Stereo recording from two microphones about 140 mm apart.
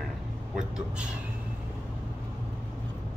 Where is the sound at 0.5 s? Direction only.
5° right (ahead or behind).